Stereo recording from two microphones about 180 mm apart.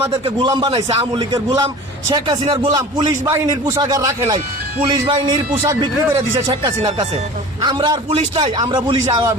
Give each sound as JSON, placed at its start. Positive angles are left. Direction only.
{"t": 0.3, "sound": "a man's voice", "side_deg": -25}
{"t": 5.6, "sound": "speech", "side_deg": -15}
{"t": 7.6, "sound": "a man's voice", "side_deg": -25}